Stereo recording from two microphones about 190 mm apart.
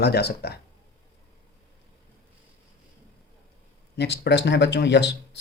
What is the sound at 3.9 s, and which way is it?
Speech, 60° left (ahead or behind).